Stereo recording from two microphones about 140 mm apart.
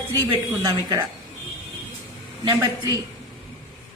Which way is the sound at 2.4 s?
30° right (ahead or behind).